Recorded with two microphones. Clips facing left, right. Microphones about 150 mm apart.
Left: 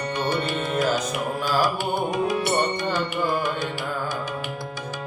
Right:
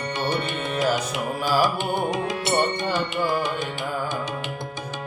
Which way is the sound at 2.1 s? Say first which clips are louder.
Left 1 dB; 20° right (ahead or behind).